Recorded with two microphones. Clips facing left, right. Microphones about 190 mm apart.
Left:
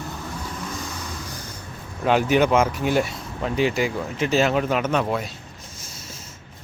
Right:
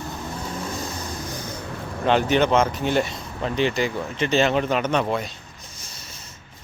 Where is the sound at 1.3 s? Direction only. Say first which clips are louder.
Right 5 dB; 65° right (ahead or behind).